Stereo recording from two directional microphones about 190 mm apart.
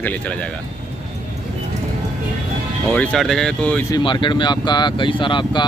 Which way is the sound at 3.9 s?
25° left (ahead or behind).